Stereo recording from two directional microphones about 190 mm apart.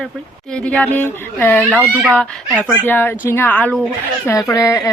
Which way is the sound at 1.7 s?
10° right (ahead or behind).